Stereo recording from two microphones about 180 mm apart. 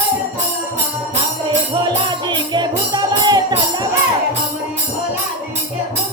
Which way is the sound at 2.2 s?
25° right (ahead or behind).